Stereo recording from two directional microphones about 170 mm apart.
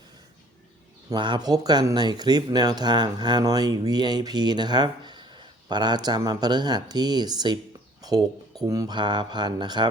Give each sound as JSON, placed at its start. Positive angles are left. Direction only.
{"t": 1.1, "sound": "speech", "side_deg": -25}